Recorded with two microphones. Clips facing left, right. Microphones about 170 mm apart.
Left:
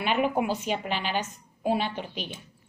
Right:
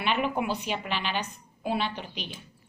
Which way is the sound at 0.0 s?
45° left (ahead or behind).